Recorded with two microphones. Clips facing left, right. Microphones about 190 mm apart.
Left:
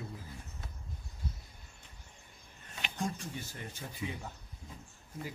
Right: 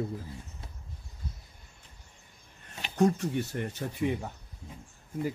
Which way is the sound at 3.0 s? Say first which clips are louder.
Right 13 dB; 65° right (ahead or behind).